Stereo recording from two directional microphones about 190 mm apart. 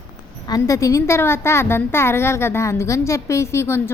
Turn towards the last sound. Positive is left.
turn(degrees=15)  # may be behind; listen again after turning